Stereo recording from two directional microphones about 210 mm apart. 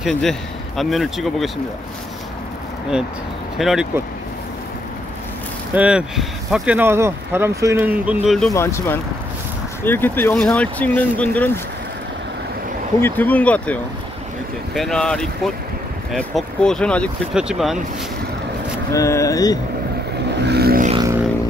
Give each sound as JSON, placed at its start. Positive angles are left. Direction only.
{"t": 0.0, "sound": "speech", "side_deg": 0}
{"t": 3.5, "sound": "speech", "side_deg": 0}
{"t": 5.8, "sound": "speech", "side_deg": -5}
{"t": 8.5, "sound": "speech", "side_deg": 15}
{"t": 13.0, "sound": "speech", "side_deg": 10}
{"t": 18.9, "sound": "speech", "side_deg": 15}
{"t": 20.4, "sound": "vehicle", "side_deg": -50}